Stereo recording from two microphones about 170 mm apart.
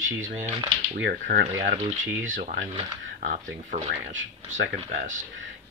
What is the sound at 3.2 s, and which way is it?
Speech, 45° right (ahead or behind).